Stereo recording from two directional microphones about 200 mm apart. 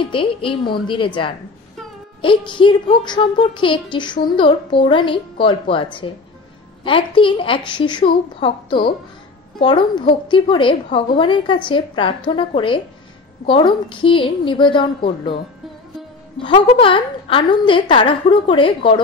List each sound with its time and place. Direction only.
0.0 s speech: 25° left (ahead or behind)